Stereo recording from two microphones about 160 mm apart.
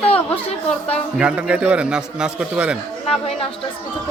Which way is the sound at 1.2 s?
5° right (ahead or behind).